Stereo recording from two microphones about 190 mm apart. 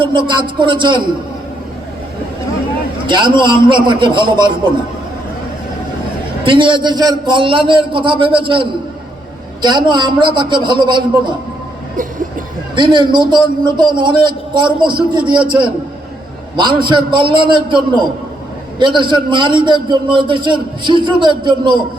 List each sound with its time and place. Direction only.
0.0 s a man's voice: 25° right (ahead or behind)
3.1 s a man's voice: 25° right (ahead or behind)
6.4 s a man's voice: 25° right (ahead or behind)
12.7 s a man's voice: 25° right (ahead or behind)
16.6 s a man's voice: 25° right (ahead or behind)